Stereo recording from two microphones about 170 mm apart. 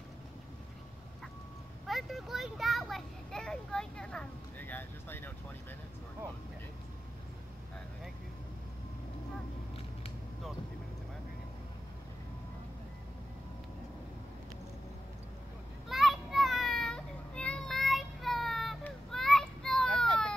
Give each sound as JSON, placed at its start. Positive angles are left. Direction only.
{"t": 1.9, "sound": "a child's voice", "side_deg": 0}
{"t": 15.9, "sound": "child singing", "side_deg": 0}